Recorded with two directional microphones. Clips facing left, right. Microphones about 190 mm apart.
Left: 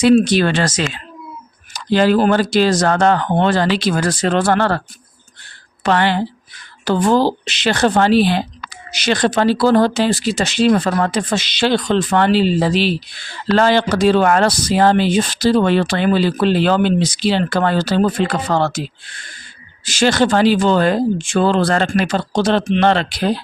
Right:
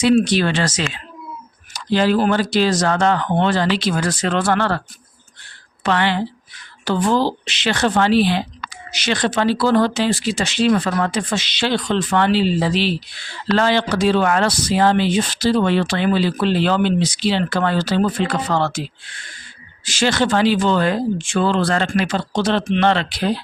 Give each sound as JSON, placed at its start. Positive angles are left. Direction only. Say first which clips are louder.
{"t": 0.0, "sound": "speech", "louder": "left 3 dB", "side_deg": 45}
{"t": 5.9, "sound": "speech", "louder": "left 3 dB", "side_deg": 45}